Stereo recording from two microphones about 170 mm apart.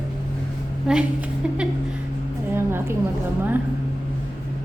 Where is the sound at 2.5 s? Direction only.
15° right (ahead or behind).